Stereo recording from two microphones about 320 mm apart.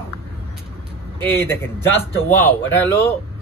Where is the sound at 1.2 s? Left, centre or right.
Centre.